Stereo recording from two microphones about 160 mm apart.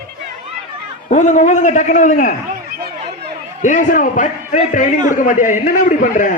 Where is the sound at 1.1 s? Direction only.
50° left (ahead or behind).